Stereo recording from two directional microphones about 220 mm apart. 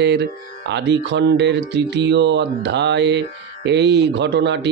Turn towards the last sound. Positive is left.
turn(degrees=-50)  # may be behind; listen again after turning